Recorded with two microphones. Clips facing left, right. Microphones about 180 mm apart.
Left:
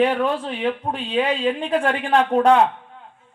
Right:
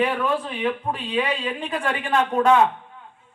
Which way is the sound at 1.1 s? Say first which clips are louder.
Left 5 dB; 55° left (ahead or behind).